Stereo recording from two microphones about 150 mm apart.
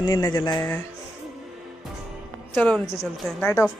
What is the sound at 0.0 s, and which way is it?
Speech, 30° left (ahead or behind).